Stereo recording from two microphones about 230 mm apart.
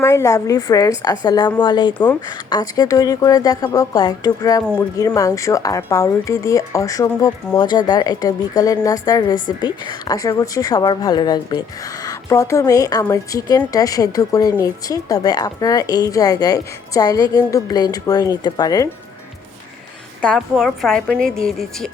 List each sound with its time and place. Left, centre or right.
0.0 s a woman's voice: centre
20.2 s a woman's voice: centre